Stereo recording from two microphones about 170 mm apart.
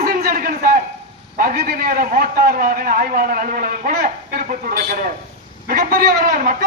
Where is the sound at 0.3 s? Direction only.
55° right (ahead or behind).